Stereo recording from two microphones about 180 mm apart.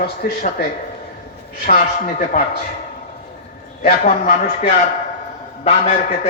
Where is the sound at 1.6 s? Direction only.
45° left (ahead or behind).